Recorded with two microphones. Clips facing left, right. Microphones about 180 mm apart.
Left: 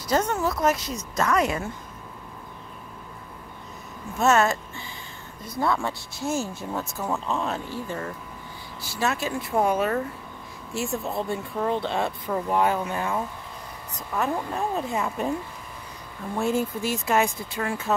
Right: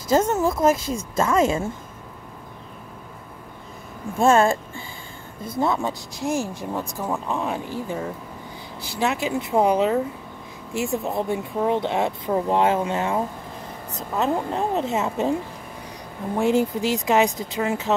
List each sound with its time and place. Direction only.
0.1 s speech: 25° right (ahead or behind)
4.2 s speech: 30° right (ahead or behind)
16.3 s speech: 15° right (ahead or behind)